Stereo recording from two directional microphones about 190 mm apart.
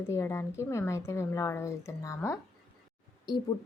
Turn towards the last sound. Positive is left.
turn(degrees=20)  # may be behind; listen again after turning